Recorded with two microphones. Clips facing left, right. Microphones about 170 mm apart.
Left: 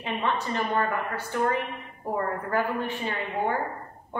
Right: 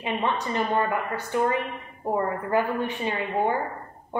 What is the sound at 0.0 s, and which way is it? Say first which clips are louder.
A woman's voice: right 2 dB; 15° right (ahead or behind).